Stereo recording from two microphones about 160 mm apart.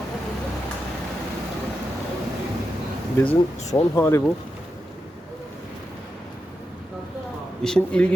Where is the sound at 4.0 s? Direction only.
15° left (ahead or behind).